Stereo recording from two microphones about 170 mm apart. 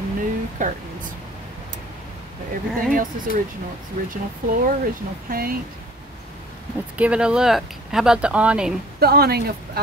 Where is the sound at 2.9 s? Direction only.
55° right (ahead or behind).